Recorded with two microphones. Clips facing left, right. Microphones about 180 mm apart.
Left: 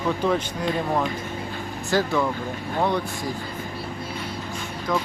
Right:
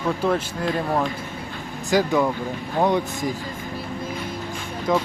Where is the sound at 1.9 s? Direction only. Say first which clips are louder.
Right 3 dB; 15° right (ahead or behind).